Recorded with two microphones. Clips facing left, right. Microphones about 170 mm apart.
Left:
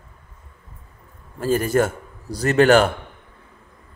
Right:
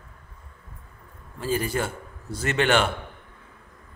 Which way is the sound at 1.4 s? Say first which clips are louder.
Left 7 dB; 45° left (ahead or behind).